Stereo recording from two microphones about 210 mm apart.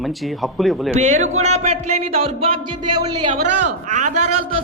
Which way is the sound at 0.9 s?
35° right (ahead or behind).